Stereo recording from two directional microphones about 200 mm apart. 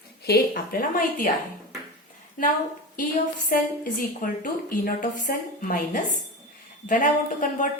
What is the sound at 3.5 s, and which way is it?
A woman's voice, 45° left (ahead or behind).